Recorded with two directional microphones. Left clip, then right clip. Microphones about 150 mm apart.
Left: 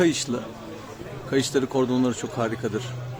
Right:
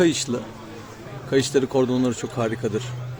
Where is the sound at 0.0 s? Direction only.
15° right (ahead or behind).